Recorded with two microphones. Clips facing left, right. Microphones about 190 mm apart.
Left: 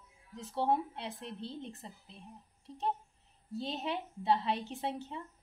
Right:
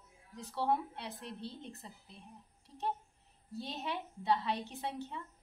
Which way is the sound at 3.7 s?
25° left (ahead or behind).